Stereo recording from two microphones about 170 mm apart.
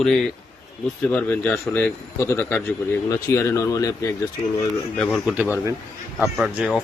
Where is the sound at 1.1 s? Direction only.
10° left (ahead or behind).